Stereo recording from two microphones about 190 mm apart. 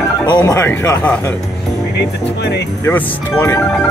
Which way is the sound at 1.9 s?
60° left (ahead or behind).